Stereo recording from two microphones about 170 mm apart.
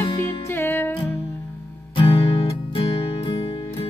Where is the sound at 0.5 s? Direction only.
15° left (ahead or behind).